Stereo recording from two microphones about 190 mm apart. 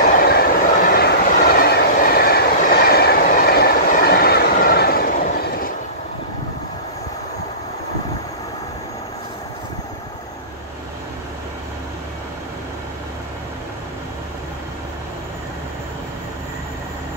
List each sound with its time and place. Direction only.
0.0 s train: 50° left (ahead or behind)